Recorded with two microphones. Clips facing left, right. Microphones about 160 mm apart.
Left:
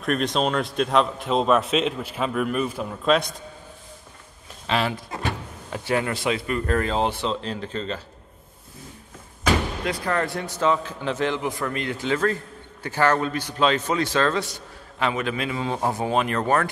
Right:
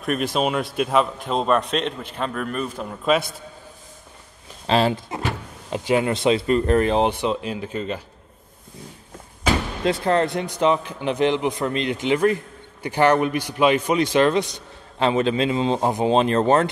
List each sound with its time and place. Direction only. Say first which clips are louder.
0.0 s a man's voice: right 1 dB; 5° right (ahead or behind)
4.6 s speech: right 5 dB; 30° right (ahead or behind)
5.7 s a man's voice: right 4 dB; 20° right (ahead or behind)
9.8 s a man's voice: right 8 dB; 25° right (ahead or behind)